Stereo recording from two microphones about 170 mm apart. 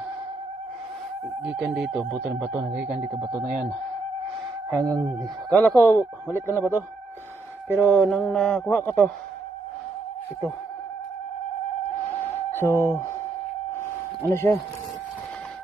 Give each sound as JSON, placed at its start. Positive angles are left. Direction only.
{"t": 1.6, "sound": "speech", "side_deg": -5}
{"t": 3.3, "sound": "speech", "side_deg": -20}
{"t": 4.7, "sound": "a man's voice", "side_deg": 5}
{"t": 7.6, "sound": "speech", "side_deg": -10}
{"t": 8.0, "sound": "mantra", "side_deg": 0}
{"t": 8.7, "sound": "a man's voice", "side_deg": 10}
{"t": 12.1, "sound": "a sound", "side_deg": 10}
{"t": 14.3, "sound": "a man's voice", "side_deg": 15}